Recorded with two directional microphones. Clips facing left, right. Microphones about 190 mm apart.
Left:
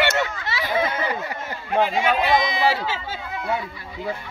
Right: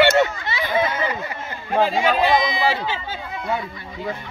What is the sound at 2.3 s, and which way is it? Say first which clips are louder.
Speech: even; centre (ahead or behind).